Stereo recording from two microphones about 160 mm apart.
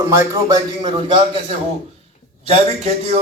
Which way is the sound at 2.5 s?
40° right (ahead or behind).